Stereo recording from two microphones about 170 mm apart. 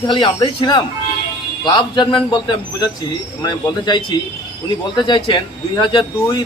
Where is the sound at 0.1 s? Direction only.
25° left (ahead or behind).